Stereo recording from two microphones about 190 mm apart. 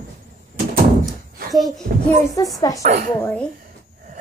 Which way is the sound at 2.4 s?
20° left (ahead or behind).